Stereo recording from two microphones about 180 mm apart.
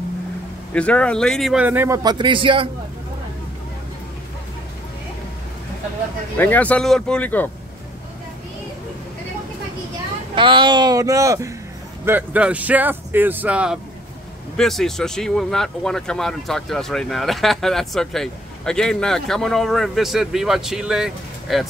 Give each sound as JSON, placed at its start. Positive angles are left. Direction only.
{"t": 0.7, "sound": "speech", "side_deg": 5}
{"t": 2.0, "sound": "speech", "side_deg": -25}
{"t": 6.3, "sound": "speech", "side_deg": 10}
{"t": 10.3, "sound": "speech", "side_deg": -25}